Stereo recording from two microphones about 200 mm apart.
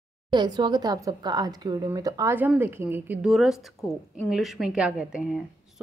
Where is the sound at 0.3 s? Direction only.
20° right (ahead or behind).